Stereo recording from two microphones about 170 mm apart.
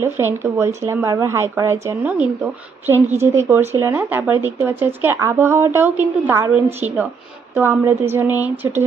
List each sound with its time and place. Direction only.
0.0 s speech: 15° right (ahead or behind)